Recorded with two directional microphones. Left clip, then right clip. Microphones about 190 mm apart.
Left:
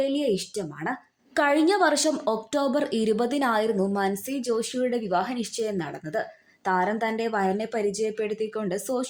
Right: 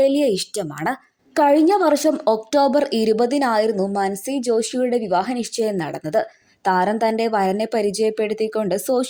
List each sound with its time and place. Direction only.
0.0 s speech: 45° right (ahead or behind)
1.3 s speech: 35° right (ahead or behind)